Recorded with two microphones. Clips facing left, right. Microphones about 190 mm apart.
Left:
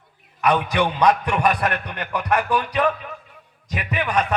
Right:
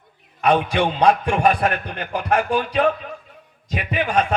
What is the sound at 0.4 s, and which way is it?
A man's voice, 30° right (ahead or behind).